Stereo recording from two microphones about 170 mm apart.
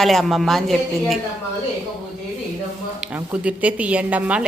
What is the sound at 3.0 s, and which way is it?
A woman's voice, 10° right (ahead or behind).